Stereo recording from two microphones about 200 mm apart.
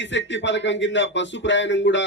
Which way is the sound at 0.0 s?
65° left (ahead or behind).